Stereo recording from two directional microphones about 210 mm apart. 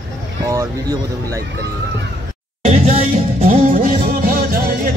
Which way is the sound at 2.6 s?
30° right (ahead or behind).